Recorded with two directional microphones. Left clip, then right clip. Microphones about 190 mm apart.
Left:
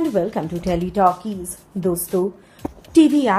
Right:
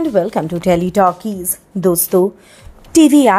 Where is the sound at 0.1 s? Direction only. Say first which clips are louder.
Right 6 dB; 25° right (ahead or behind).